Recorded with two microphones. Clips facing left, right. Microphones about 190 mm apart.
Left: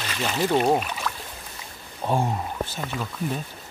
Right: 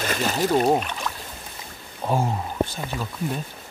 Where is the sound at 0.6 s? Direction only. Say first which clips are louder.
Right 1 dB; 5° left (ahead or behind).